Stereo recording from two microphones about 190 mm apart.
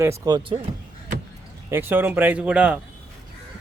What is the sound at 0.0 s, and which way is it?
Speech, 15° right (ahead or behind).